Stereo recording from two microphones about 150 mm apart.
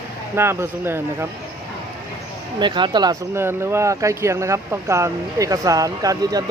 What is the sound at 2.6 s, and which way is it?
Speech, 30° right (ahead or behind).